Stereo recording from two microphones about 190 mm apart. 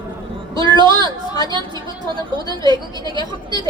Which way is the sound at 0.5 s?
25° right (ahead or behind).